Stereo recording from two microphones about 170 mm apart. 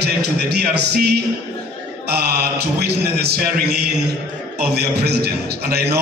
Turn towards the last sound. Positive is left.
turn(degrees=-70)  # may be behind; listen again after turning